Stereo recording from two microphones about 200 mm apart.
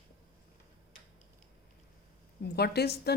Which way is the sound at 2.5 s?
55° left (ahead or behind).